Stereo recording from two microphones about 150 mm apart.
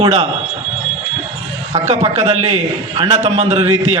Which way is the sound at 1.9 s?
45° right (ahead or behind).